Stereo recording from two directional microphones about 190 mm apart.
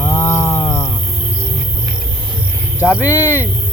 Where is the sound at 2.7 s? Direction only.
5° right (ahead or behind).